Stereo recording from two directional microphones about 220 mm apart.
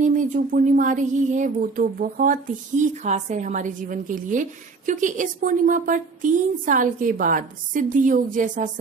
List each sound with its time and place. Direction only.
0.0 s speech: 35° right (ahead or behind)